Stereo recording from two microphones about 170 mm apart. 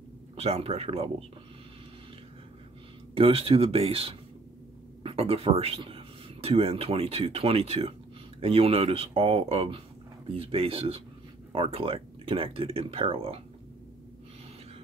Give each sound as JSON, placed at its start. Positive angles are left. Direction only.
{"t": 0.4, "sound": "speech", "side_deg": -35}
{"t": 3.2, "sound": "speech", "side_deg": -35}